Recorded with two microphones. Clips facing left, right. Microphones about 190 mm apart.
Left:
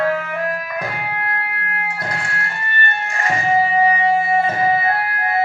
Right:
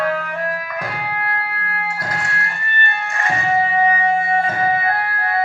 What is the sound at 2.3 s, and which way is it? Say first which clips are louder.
Music: even; 30° left (ahead or behind).